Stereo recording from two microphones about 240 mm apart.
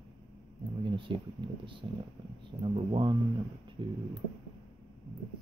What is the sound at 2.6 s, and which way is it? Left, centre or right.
Speech, centre.